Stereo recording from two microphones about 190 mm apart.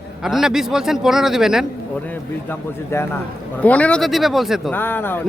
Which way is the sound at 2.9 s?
15° left (ahead or behind).